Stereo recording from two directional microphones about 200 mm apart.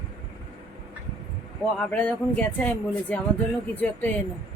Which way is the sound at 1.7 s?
10° left (ahead or behind).